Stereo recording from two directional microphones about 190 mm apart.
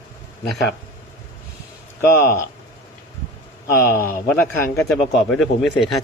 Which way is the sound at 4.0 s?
50° left (ahead or behind).